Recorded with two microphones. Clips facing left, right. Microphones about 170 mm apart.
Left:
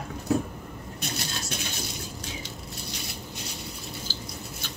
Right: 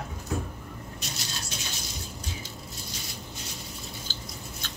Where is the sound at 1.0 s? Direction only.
55° left (ahead or behind).